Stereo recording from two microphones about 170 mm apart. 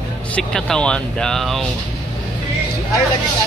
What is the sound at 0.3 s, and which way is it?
Speech, 5° left (ahead or behind).